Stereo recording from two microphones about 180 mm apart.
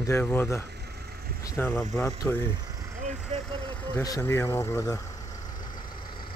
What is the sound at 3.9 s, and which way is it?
Speech, 15° left (ahead or behind).